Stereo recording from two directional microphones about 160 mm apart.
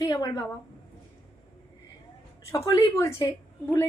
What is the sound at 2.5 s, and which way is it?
Speech, 20° left (ahead or behind).